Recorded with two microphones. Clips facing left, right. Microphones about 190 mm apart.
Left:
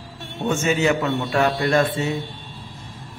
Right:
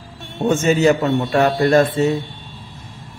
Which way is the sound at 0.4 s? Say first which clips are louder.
Right 5 dB; 40° right (ahead or behind).